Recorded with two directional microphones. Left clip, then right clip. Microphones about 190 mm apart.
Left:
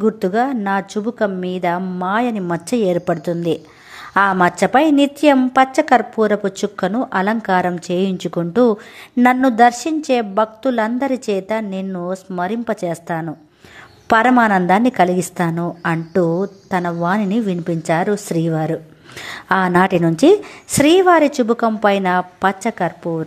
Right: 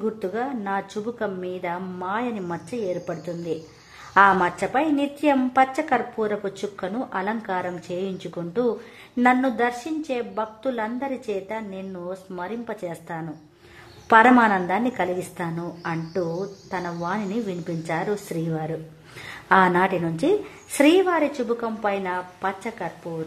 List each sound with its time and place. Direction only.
0.0 s a woman's voice: 35° left (ahead or behind)
2.7 s a woman's voice: 45° left (ahead or behind)